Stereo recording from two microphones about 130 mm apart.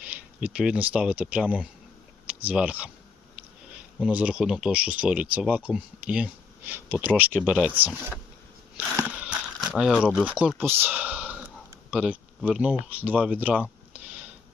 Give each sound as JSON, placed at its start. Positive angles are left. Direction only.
{"t": 0.0, "sound": "speech", "side_deg": -10}
{"t": 4.0, "sound": "speech", "side_deg": -10}
{"t": 9.0, "sound": "a sound", "side_deg": -10}
{"t": 10.6, "sound": "speech", "side_deg": -15}